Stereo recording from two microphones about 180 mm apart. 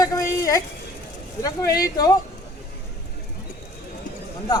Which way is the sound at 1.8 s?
20° left (ahead or behind).